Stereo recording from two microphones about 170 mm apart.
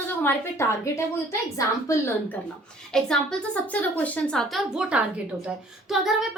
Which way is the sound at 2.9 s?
5° left (ahead or behind).